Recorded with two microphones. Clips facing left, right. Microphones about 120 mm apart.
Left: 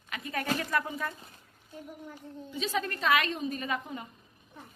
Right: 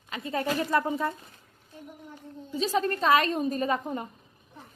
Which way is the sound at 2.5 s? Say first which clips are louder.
Right 6 dB; 35° right (ahead or behind).